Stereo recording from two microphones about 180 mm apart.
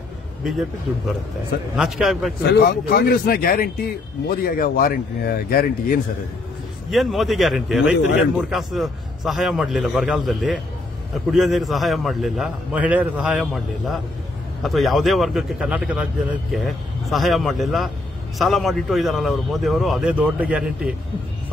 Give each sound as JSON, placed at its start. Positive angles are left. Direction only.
{"t": 1.8, "sound": "a man's voice", "side_deg": 0}
{"t": 2.4, "sound": "speech", "side_deg": 65}
{"t": 6.9, "sound": "a man's voice", "side_deg": 0}
{"t": 14.6, "sound": "a man's voice", "side_deg": 0}